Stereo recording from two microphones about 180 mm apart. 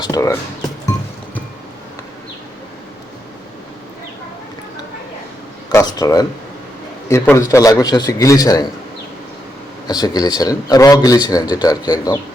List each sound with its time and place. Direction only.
0.0 s a man's voice: 20° left (ahead or behind)
5.6 s a man's voice: 20° left (ahead or behind)
9.8 s a man's voice: 20° left (ahead or behind)